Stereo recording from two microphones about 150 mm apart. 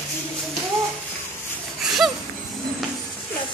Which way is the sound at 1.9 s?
Centre (ahead or behind).